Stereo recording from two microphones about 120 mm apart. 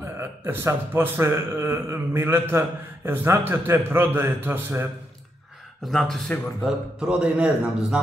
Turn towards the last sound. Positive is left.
turn(degrees=-10)  # may be behind; listen again after turning